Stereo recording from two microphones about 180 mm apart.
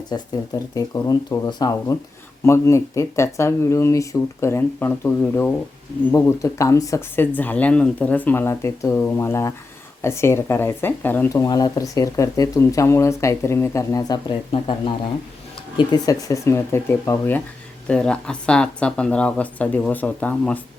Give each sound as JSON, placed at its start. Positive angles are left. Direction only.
{"t": 0.1, "sound": "speech", "side_deg": 20}